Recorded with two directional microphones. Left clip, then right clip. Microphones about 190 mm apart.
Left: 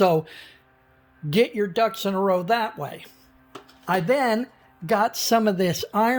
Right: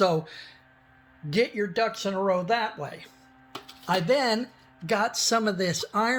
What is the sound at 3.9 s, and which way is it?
Speech, 40° left (ahead or behind).